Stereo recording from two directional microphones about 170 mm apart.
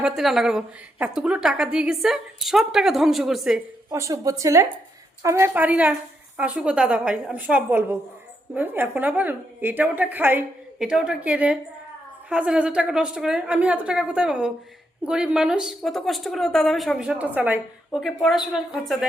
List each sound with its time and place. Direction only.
0.0 s a woman's voice: centre (ahead or behind)
3.9 s a woman's voice: 20° right (ahead or behind); by 19.0 s centre (ahead or behind)